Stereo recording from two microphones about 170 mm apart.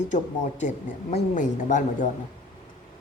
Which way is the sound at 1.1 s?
45° left (ahead or behind).